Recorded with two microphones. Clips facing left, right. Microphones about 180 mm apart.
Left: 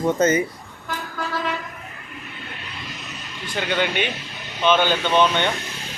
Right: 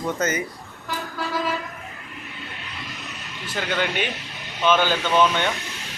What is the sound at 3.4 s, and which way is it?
A man's voice, centre (ahead or behind).